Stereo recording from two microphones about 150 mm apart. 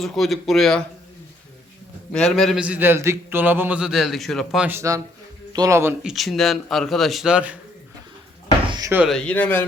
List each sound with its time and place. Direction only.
0.0 s a man's voice: centre (ahead or behind)
2.1 s a man's voice: 5° left (ahead or behind)
4.6 s speech: 15° right (ahead or behind)
6.0 s a man's voice: centre (ahead or behind)
8.6 s a sound: 30° right (ahead or behind)
9.0 s speech: 5° left (ahead or behind)